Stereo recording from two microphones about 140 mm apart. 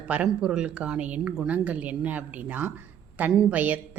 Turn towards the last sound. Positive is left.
turn(degrees=-10)  # may be behind; listen again after turning